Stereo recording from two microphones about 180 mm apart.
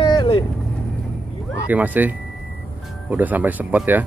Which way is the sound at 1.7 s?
10° right (ahead or behind).